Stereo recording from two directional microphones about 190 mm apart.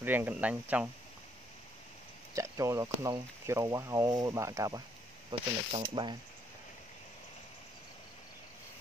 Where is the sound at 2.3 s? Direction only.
15° right (ahead or behind).